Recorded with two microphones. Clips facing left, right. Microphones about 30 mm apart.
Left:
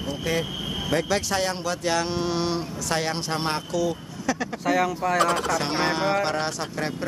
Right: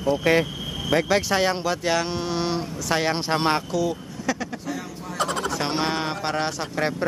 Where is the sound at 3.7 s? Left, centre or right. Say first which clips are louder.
Right 1 dB; centre.